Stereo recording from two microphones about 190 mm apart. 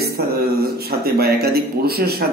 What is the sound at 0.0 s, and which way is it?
A man's voice, 55° right (ahead or behind).